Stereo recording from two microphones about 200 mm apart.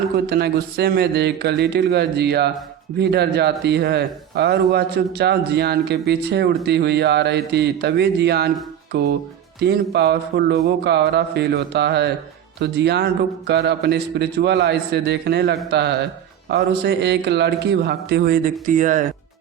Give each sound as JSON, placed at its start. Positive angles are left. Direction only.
{"t": 0.3, "sound": "a man's voice", "side_deg": -55}
{"t": 18.6, "sound": "speech", "side_deg": -40}